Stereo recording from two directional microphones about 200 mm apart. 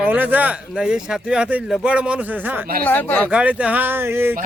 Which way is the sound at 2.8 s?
10° left (ahead or behind).